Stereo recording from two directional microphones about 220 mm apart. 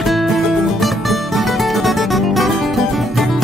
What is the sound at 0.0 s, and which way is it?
Music, centre (ahead or behind).